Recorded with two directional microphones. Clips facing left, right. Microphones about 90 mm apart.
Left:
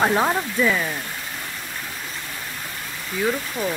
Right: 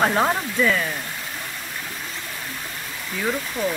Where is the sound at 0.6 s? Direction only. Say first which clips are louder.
Right 1 dB; 15° left (ahead or behind).